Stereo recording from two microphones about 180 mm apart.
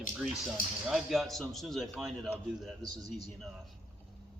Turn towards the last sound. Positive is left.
turn(degrees=0)  # may be behind; listen again after turning